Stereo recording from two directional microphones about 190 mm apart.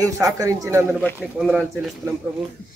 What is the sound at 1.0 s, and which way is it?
Speech, 5° left (ahead or behind).